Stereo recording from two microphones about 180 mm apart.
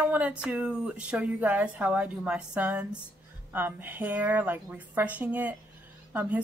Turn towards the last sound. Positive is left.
turn(degrees=-10)  # may be behind; listen again after turning